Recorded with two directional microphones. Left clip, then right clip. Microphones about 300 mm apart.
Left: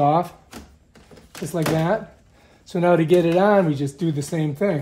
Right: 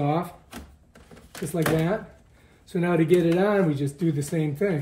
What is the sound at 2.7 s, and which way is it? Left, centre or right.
Speech, centre.